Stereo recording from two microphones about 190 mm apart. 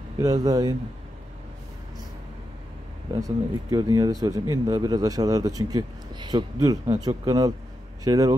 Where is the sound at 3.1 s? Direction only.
20° right (ahead or behind).